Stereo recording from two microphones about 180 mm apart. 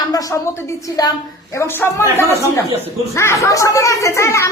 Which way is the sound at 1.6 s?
15° left (ahead or behind).